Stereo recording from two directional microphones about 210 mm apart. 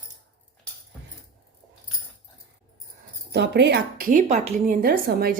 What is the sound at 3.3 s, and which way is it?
A woman's voice, 55° right (ahead or behind).